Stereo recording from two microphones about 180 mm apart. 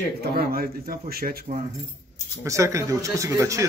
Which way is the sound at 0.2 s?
55° right (ahead or behind).